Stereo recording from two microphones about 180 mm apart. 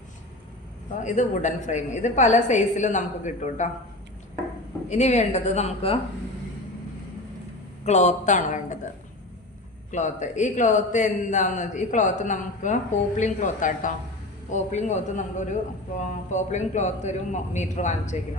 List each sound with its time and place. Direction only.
0.9 s a man's voice: 45° left (ahead or behind)
4.9 s a man's voice: 40° left (ahead or behind)
7.9 s a man's voice: 40° left (ahead or behind)
9.9 s a man's voice: 40° left (ahead or behind)